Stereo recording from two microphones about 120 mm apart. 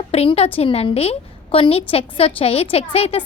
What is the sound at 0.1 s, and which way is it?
A woman's voice, 55° left (ahead or behind).